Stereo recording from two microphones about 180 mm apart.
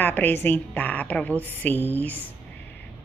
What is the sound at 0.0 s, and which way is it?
A woman's voice, 10° left (ahead or behind).